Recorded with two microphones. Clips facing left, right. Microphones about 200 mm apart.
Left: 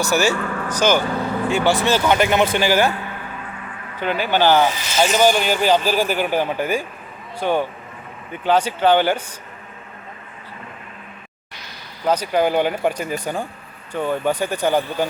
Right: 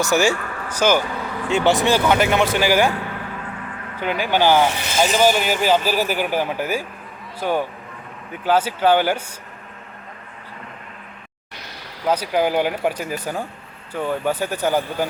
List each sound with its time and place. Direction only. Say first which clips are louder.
0.0 s speech: even; 15° right (ahead or behind)
1.5 s speech: right 2 dB; 20° right (ahead or behind)
2.0 s speech: left 1 dB; centre (ahead or behind)
2.6 s speech: right 2 dB; 10° right (ahead or behind)
4.0 s speech: left 1 dB; 10° right (ahead or behind)
4.7 s speech: right 2 dB; 60° right (ahead or behind)
5.1 s speech: left 1 dB; 5° right (ahead or behind)
12.0 s speech: left 1 dB; 10° right (ahead or behind)